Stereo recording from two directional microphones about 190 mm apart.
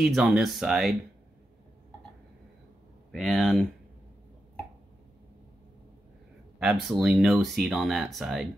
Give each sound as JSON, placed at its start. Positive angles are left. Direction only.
{"t": 0.0, "sound": "speech", "side_deg": 0}
{"t": 3.1, "sound": "speech", "side_deg": 0}
{"t": 6.6, "sound": "speech", "side_deg": -5}